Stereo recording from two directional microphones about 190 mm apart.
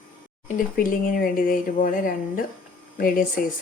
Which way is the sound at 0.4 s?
50° left (ahead or behind).